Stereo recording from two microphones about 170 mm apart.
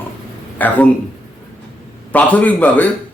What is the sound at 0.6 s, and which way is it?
Speech, 10° left (ahead or behind).